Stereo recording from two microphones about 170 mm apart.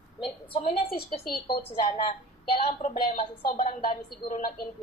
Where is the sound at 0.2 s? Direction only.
35° left (ahead or behind).